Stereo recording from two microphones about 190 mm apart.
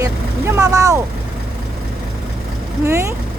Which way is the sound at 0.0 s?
15° right (ahead or behind).